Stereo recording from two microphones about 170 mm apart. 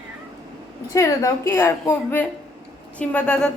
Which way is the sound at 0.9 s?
20° left (ahead or behind).